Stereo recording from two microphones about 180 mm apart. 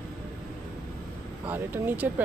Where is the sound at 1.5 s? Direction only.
10° right (ahead or behind).